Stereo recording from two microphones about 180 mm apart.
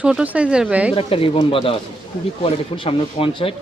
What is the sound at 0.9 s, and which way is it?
Speech, 30° left (ahead or behind).